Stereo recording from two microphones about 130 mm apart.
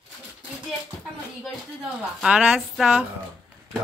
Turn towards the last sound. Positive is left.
turn(degrees=0)  # may be behind; listen again after turning